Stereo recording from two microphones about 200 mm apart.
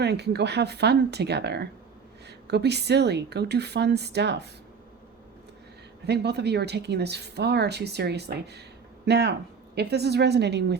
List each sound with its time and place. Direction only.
0.0 s speech: 55° right (ahead or behind)
6.1 s speech: 55° right (ahead or behind)